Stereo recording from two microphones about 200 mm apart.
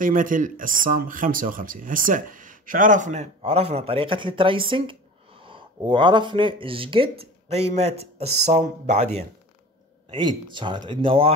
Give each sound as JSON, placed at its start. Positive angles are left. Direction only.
{"t": 0.0, "sound": "speech", "side_deg": -40}
{"t": 10.1, "sound": "speech", "side_deg": -25}